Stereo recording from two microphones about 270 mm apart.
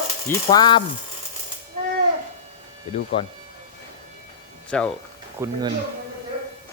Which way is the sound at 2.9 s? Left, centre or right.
Left.